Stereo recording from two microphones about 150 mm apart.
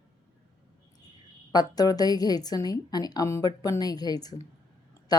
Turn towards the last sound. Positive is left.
turn(degrees=25)  # may be behind; listen again after turning